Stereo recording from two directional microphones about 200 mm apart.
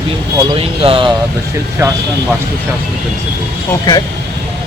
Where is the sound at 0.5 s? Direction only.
25° right (ahead or behind).